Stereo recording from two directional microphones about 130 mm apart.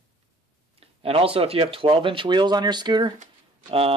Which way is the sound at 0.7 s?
45° right (ahead or behind).